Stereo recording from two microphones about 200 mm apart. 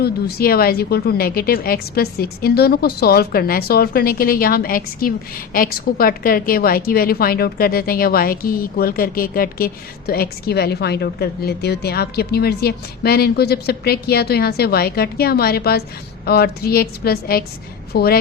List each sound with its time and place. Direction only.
0.0 s a woman's voice: 50° left (ahead or behind)